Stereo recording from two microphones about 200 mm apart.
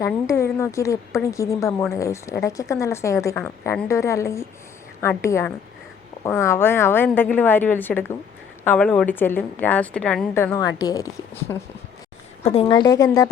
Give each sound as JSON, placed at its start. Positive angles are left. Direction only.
{"t": 0.0, "sound": "speech", "side_deg": 15}
{"t": 12.4, "sound": "speech", "side_deg": 30}